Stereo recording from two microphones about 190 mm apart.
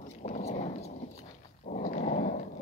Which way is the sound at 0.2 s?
35° left (ahead or behind).